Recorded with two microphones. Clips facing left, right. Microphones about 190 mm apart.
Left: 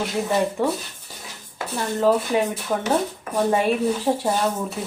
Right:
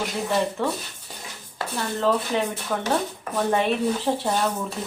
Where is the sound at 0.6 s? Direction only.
15° left (ahead or behind).